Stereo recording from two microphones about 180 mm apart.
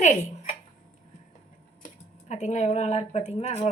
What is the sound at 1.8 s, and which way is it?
Speech, 40° left (ahead or behind).